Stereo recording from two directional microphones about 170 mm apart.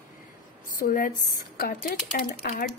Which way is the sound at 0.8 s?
55° left (ahead or behind).